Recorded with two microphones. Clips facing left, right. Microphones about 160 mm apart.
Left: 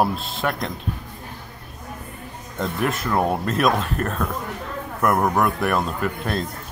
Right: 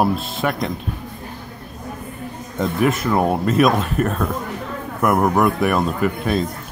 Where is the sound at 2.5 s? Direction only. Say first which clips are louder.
Right 5 dB; 5° right (ahead or behind).